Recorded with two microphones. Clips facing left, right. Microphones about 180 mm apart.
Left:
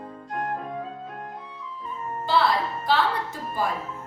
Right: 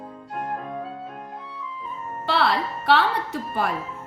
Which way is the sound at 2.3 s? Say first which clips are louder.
Even; 65° right (ahead or behind).